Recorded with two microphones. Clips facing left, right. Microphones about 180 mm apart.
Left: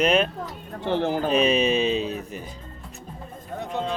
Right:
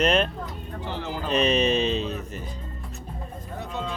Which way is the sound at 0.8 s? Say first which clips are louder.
Left 9 dB; 60° left (ahead or behind).